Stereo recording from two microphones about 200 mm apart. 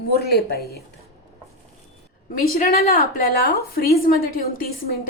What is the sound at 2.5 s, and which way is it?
A woman's voice, 50° left (ahead or behind).